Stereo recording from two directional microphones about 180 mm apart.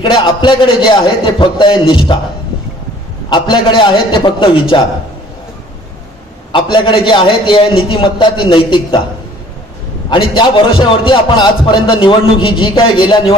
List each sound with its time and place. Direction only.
0.0 s a man's voice: 25° left (ahead or behind)
3.3 s a man's voice: 25° left (ahead or behind)
6.5 s a man's voice: 30° left (ahead or behind)
10.0 s a man's voice: 25° left (ahead or behind)